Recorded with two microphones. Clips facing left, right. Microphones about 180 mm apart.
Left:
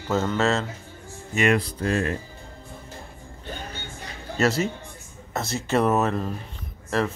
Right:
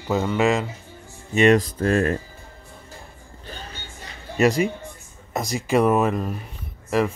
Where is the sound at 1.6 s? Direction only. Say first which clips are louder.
Right 4 dB; 50° right (ahead or behind).